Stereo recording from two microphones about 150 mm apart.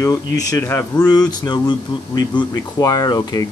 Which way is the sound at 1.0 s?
25° left (ahead or behind).